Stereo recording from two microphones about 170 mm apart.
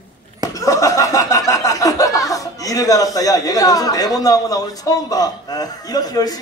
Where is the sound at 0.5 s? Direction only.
20° left (ahead or behind).